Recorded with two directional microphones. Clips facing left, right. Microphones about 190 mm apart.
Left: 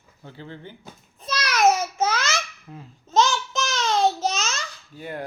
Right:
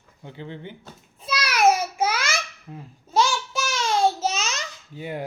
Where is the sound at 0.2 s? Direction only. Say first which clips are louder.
Right 3 dB; 20° right (ahead or behind).